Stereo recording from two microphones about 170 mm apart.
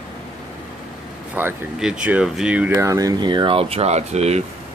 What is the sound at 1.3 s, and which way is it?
Speech, 5° right (ahead or behind).